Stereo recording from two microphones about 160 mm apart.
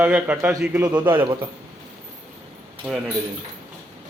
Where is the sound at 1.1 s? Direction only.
30° right (ahead or behind).